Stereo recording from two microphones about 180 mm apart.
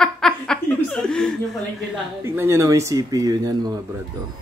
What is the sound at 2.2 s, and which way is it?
Speech, 15° right (ahead or behind).